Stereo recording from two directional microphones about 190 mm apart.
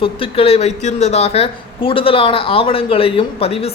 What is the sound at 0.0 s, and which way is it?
A woman's voice, 30° left (ahead or behind).